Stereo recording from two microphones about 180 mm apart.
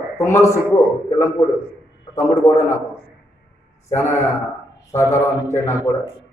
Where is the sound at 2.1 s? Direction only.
20° left (ahead or behind).